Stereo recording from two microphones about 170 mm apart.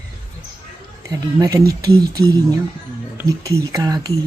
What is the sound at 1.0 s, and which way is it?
Speech, 20° right (ahead or behind).